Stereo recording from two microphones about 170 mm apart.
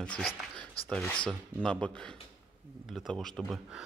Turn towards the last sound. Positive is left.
turn(degrees=0)  # may be behind; listen again after turning